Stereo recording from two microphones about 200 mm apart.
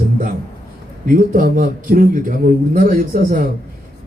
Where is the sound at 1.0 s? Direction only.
45° right (ahead or behind).